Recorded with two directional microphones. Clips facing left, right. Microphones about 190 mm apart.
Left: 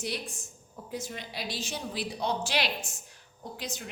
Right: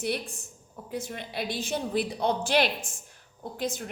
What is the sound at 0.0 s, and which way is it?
A woman's voice, 60° right (ahead or behind).